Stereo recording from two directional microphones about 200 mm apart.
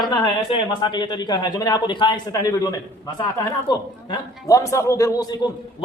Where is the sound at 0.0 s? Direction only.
20° left (ahead or behind).